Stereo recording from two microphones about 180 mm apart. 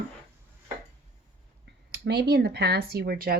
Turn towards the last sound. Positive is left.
turn(degrees=-55)  # may be behind; listen again after turning